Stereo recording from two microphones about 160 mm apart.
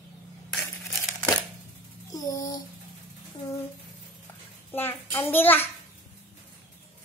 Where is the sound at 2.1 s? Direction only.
20° left (ahead or behind).